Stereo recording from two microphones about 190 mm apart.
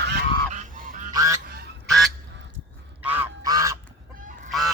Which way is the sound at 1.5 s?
55° right (ahead or behind).